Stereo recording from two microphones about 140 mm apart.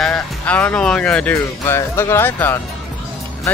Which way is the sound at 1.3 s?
20° left (ahead or behind).